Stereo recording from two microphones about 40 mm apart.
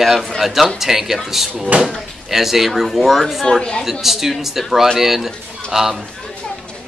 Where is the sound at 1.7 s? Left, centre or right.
Right.